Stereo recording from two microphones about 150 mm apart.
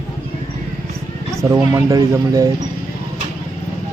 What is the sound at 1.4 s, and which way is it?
Speech, 20° right (ahead or behind).